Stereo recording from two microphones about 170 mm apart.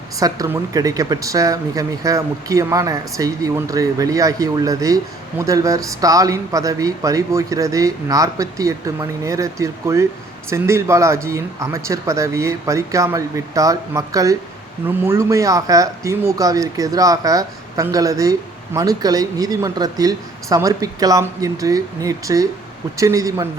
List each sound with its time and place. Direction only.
0.2 s speech: 20° right (ahead or behind)